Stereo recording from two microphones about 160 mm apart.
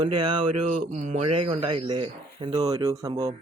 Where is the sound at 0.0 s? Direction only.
30° right (ahead or behind).